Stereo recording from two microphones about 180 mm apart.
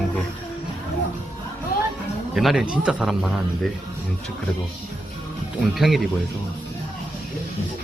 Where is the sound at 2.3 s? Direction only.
Centre (ahead or behind).